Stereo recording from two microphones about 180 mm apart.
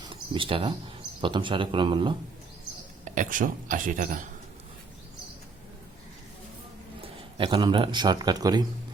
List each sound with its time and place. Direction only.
0.1 s a sound: 30° right (ahead or behind)
1.2 s speech: 25° right (ahead or behind)
3.0 s speech: 45° right (ahead or behind)
7.0 s a man's voice: 30° right (ahead or behind)